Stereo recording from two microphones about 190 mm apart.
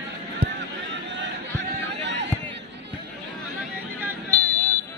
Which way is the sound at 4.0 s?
15° right (ahead or behind).